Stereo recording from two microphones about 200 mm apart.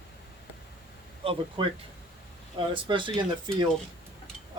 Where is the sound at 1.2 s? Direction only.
25° right (ahead or behind).